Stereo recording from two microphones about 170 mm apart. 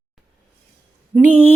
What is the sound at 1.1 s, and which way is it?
Speech, centre (ahead or behind).